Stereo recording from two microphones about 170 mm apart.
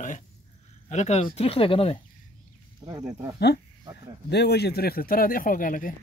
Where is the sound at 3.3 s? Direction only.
75° left (ahead or behind); by 5.9 s 55° left (ahead or behind).